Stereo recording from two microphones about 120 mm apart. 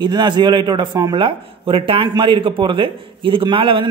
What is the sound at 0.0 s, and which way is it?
A man's voice, 40° right (ahead or behind).